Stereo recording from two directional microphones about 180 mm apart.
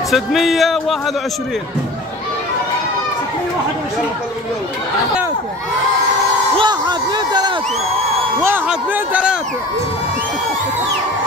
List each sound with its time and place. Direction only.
0.1 s speech: centre (ahead or behind)
6.5 s a sound: 25° right (ahead or behind)
8.4 s speech: 10° right (ahead or behind)